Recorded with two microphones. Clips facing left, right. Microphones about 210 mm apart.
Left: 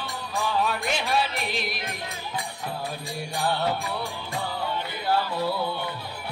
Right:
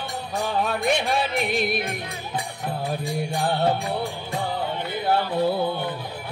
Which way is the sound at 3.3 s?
50° right (ahead or behind).